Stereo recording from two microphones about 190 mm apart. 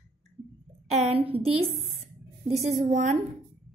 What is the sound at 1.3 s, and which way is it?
Speech, 30° right (ahead or behind).